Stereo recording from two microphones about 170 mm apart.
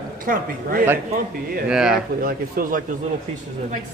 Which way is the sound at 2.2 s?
60° right (ahead or behind).